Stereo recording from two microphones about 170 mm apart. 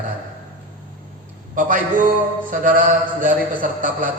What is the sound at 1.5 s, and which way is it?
A man's voice, 55° right (ahead or behind).